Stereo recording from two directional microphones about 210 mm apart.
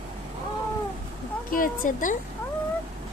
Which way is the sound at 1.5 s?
40° left (ahead or behind).